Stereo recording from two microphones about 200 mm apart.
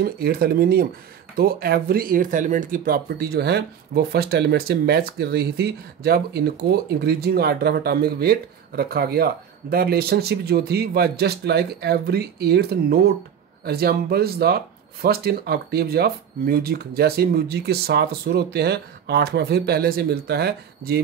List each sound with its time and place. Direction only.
0.0 s speech: 50° right (ahead or behind)